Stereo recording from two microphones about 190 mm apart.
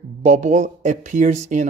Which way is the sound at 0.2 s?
40° right (ahead or behind).